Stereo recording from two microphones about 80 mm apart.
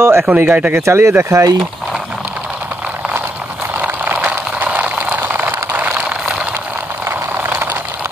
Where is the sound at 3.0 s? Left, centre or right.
Centre.